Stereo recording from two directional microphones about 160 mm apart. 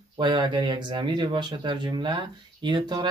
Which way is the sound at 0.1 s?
30° right (ahead or behind).